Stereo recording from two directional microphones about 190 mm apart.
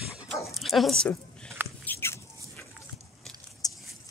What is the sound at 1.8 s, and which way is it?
Rodents, 10° left (ahead or behind).